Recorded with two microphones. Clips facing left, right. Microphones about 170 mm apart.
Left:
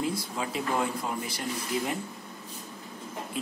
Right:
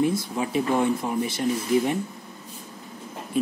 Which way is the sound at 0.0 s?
20° right (ahead or behind).